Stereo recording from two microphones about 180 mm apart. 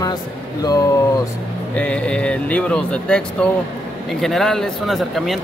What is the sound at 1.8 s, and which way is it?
Speech, 5° left (ahead or behind).